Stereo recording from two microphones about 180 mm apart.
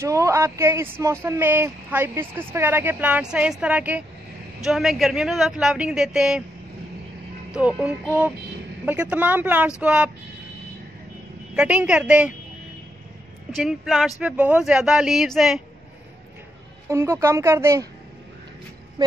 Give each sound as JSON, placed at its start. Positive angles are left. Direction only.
{"t": 0.0, "sound": "speech", "side_deg": -15}
{"t": 7.5, "sound": "speech", "side_deg": -5}
{"t": 11.5, "sound": "speech", "side_deg": -5}
{"t": 13.6, "sound": "speech", "side_deg": 0}
{"t": 16.9, "sound": "speech", "side_deg": -15}
{"t": 19.0, "sound": "quack", "side_deg": -20}